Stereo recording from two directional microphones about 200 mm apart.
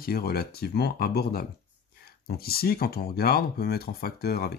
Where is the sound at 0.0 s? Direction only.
50° left (ahead or behind).